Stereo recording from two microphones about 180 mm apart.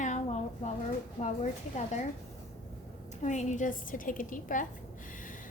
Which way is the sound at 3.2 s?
40° left (ahead or behind).